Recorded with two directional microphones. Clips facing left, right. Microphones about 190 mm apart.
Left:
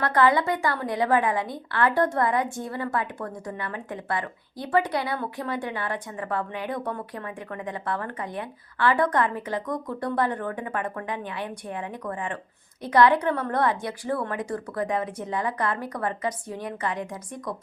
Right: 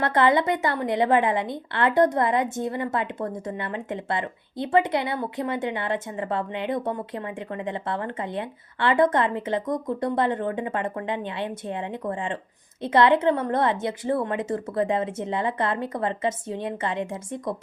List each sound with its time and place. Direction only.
0.0 s a woman's voice: 25° right (ahead or behind)